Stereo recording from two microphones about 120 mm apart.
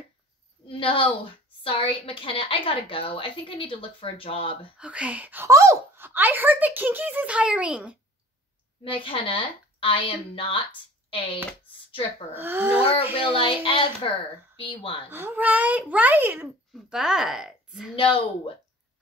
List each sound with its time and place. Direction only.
0.7 s a woman's voice: 50° left (ahead or behind)
4.7 s a child's voice: 10° right (ahead or behind)
5.5 s a child's voice: 25° right (ahead or behind); by 8.0 s 10° right (ahead or behind)
8.8 s a woman's voice: 45° left (ahead or behind)
12.4 s a child's voice: 15° right (ahead or behind)
13.1 s a woman's voice: 50° left (ahead or behind)
15.0 s a child's voice: 20° right (ahead or behind)
16.7 s a woman's voice: 5° right (ahead or behind)
17.9 s a woman's voice: 45° left (ahead or behind)